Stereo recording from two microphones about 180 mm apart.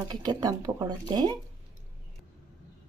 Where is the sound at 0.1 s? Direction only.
25° right (ahead or behind).